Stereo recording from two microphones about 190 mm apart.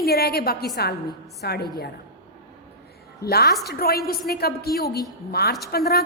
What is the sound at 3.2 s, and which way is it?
A woman's voice, 55° left (ahead or behind).